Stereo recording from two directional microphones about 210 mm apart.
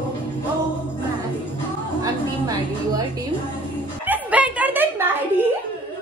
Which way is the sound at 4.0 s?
10° right (ahead or behind).